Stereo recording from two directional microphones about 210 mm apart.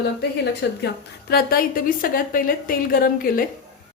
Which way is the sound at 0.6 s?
50° left (ahead or behind).